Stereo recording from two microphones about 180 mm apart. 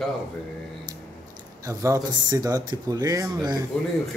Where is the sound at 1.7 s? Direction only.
20° right (ahead or behind).